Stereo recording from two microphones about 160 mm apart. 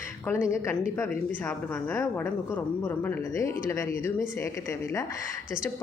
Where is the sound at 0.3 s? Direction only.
15° left (ahead or behind).